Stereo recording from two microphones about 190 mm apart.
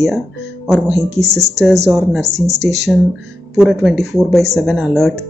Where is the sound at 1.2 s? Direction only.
15° right (ahead or behind).